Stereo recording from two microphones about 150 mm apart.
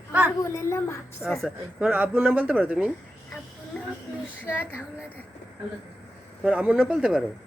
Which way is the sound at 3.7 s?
5° left (ahead or behind).